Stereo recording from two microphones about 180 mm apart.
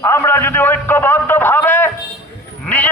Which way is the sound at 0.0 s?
15° left (ahead or behind).